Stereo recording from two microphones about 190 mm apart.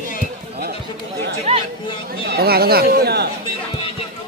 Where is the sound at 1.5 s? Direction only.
35° right (ahead or behind).